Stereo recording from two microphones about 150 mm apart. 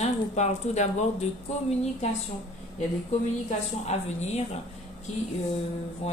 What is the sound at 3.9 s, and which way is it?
Speech, 50° left (ahead or behind).